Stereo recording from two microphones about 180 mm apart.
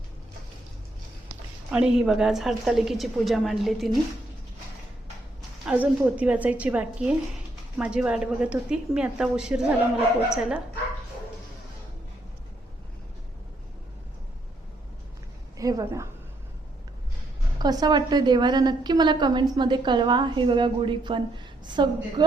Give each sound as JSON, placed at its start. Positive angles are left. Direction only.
{"t": 1.7, "sound": "a woman's voice", "side_deg": -5}
{"t": 5.6, "sound": "a woman's voice", "side_deg": -10}
{"t": 15.5, "sound": "a woman's voice", "side_deg": -20}
{"t": 17.6, "sound": "a woman's voice", "side_deg": -20}